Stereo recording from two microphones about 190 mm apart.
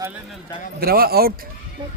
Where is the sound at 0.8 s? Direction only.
55° right (ahead or behind).